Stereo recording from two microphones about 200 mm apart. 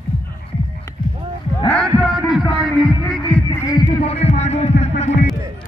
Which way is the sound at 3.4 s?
20° left (ahead or behind).